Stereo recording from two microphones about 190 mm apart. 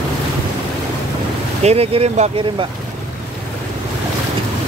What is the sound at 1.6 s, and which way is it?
Speech, 30° right (ahead or behind).